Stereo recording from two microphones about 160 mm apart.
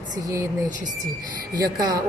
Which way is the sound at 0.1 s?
20° right (ahead or behind).